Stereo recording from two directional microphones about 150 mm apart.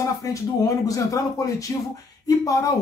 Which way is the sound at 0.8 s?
20° left (ahead or behind).